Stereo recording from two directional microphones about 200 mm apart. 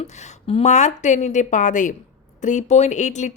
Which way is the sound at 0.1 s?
35° left (ahead or behind).